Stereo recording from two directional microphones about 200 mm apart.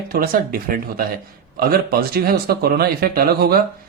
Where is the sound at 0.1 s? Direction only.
45° right (ahead or behind).